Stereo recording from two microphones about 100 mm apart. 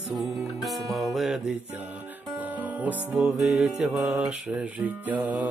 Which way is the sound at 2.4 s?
15° right (ahead or behind).